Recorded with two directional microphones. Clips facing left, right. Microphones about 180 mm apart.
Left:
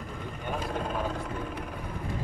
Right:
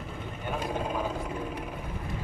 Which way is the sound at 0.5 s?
5° right (ahead or behind).